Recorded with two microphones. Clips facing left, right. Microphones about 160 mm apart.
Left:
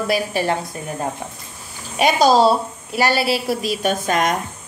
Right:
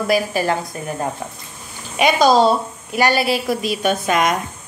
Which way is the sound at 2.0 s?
40° left (ahead or behind).